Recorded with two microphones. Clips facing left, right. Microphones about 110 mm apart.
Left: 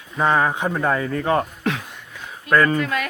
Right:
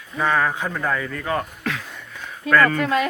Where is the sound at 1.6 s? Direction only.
20° left (ahead or behind).